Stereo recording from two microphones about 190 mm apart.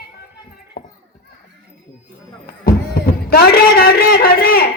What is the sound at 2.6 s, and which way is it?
A man's voice, 55° left (ahead or behind).